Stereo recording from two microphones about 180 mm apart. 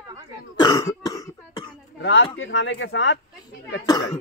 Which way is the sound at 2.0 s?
90° left.